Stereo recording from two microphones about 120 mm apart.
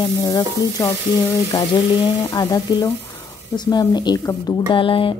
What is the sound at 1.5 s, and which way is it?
Speech, 50° left (ahead or behind).